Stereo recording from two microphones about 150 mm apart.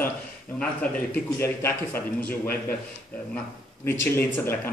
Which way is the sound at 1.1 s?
15° left (ahead or behind).